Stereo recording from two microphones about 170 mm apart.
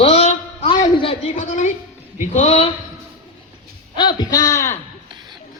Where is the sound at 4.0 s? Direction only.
25° left (ahead or behind).